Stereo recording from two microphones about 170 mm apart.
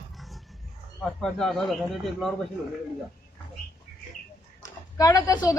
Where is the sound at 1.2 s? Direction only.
5° left (ahead or behind).